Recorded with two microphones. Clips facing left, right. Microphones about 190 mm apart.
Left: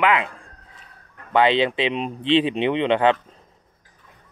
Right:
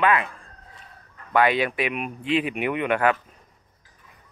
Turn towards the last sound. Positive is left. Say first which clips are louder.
# left 4 dB
turn(degrees=25)  # may be behind; listen again after turning